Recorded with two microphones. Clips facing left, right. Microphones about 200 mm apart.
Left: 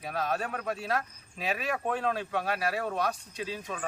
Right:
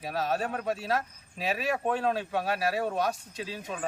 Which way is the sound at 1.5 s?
35° right (ahead or behind).